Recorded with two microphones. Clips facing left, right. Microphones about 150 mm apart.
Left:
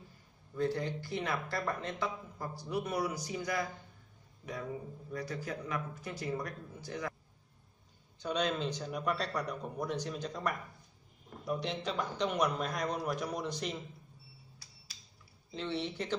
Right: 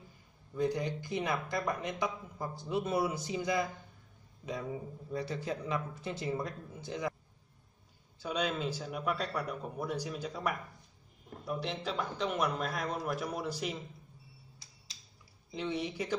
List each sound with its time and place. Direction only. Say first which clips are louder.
0.6 s speech: right 1 dB; 15° right (ahead or behind)
5.1 s speech: right 3 dB; 25° right (ahead or behind)
8.2 s a man's voice: left 1 dB; 5° right (ahead or behind)
15.5 s speech: right 1 dB; 10° right (ahead or behind)